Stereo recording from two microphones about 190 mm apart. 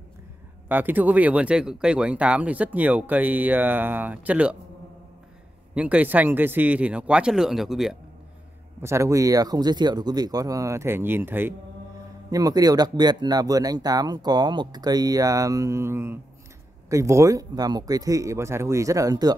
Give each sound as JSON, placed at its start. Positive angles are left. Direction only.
{"t": 0.7, "sound": "speech", "side_deg": -10}
{"t": 5.8, "sound": "speech", "side_deg": -5}
{"t": 8.8, "sound": "speech", "side_deg": -15}